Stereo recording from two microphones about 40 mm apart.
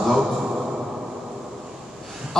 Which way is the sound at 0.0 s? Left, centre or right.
Centre.